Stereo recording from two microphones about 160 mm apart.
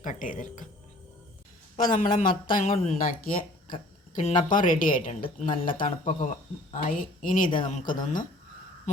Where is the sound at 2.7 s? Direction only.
45° left (ahead or behind).